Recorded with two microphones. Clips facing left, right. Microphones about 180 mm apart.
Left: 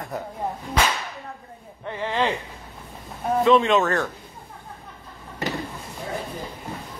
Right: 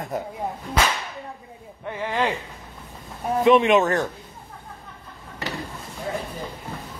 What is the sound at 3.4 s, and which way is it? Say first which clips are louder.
Speech: right 2 dB; 20° right (ahead or behind).